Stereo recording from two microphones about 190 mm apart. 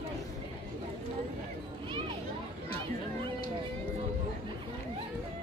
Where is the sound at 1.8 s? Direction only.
25° right (ahead or behind).